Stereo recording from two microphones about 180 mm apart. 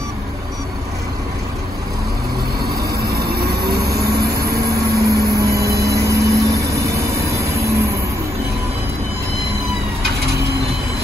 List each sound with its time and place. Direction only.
3.1 s vehicle: 60° right (ahead or behind)
5.8 s vehicle: 15° right (ahead or behind)